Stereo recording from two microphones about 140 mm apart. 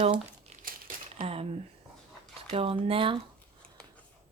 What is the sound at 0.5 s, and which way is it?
Crumpling, 50° right (ahead or behind).